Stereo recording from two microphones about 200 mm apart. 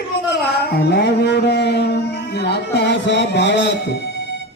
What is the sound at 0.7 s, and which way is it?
Music, 55° left (ahead or behind).